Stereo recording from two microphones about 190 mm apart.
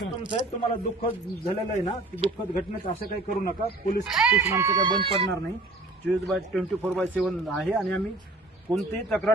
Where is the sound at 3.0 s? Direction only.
50° left (ahead or behind).